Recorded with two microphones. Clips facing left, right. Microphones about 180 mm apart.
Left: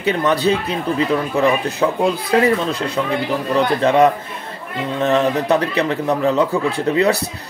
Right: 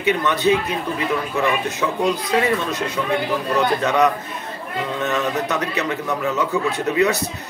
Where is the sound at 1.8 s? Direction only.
40° left (ahead or behind).